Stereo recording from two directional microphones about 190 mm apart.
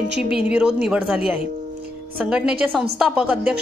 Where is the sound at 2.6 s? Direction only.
5° right (ahead or behind).